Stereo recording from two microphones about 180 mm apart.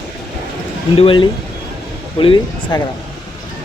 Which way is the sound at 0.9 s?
30° left (ahead or behind).